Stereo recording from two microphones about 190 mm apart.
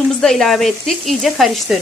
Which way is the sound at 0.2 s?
Centre (ahead or behind).